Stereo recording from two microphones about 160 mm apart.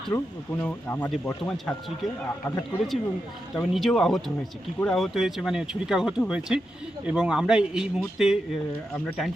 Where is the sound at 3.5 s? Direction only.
Centre (ahead or behind).